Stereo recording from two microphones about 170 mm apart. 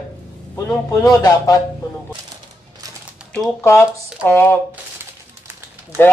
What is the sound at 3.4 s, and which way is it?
Speech, 15° left (ahead or behind).